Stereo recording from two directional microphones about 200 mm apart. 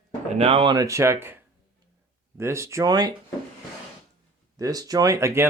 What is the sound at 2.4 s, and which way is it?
Speech, 15° right (ahead or behind).